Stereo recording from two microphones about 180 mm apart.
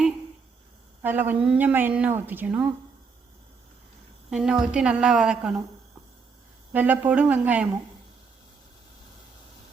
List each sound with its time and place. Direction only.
1.0 s a woman's voice: 10° right (ahead or behind)
4.3 s a woman's voice: 5° right (ahead or behind)
6.7 s a woman's voice: 10° right (ahead or behind)